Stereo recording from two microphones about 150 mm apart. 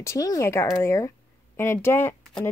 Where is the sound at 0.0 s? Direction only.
20° left (ahead or behind).